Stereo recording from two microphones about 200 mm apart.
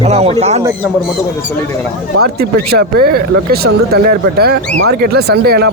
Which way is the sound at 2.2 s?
55° right (ahead or behind).